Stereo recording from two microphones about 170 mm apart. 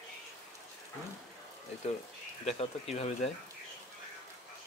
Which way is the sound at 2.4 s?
40° left (ahead or behind).